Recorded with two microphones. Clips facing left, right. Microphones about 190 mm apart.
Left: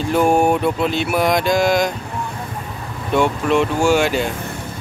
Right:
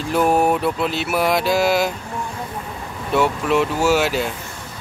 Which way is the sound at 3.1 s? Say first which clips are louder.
Left 2 dB; 5° right (ahead or behind).